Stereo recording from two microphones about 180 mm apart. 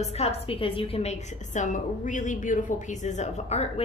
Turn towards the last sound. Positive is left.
turn(degrees=40)  # may be behind; listen again after turning